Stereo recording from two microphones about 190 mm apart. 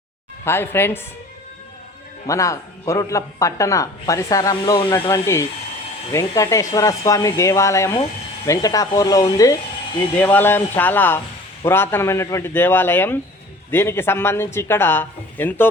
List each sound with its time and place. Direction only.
0.4 s speech: 10° left (ahead or behind)
2.2 s speech: 15° left (ahead or behind)